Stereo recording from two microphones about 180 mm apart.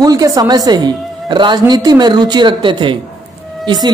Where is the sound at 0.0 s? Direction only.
20° right (ahead or behind).